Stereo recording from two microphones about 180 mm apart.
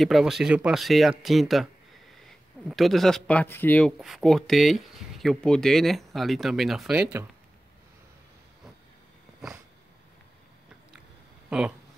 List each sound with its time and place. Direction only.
0.0 s speech: centre (ahead or behind)
2.7 s speech: centre (ahead or behind)
11.5 s speech: 5° right (ahead or behind)